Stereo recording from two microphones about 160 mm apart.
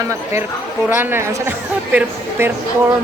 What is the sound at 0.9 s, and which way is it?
A woman's voice, 15° right (ahead or behind).